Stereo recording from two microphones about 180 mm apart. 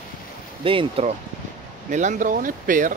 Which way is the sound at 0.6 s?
30° right (ahead or behind).